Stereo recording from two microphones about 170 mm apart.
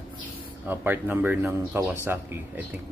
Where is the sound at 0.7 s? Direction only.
10° right (ahead or behind).